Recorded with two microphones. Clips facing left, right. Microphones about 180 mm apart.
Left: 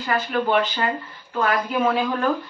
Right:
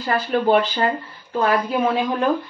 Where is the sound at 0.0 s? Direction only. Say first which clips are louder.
Right 3 dB; 35° right (ahead or behind).